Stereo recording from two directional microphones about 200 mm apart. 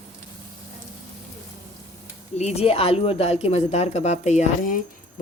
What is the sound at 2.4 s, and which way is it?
Speech, 30° left (ahead or behind).